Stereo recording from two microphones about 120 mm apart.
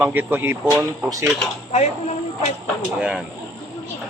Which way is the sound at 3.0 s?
10° right (ahead or behind).